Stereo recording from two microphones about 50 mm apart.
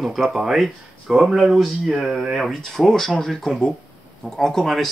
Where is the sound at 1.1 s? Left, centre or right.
Centre.